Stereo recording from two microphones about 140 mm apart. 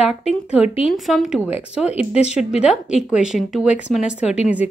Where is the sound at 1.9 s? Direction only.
50° left (ahead or behind).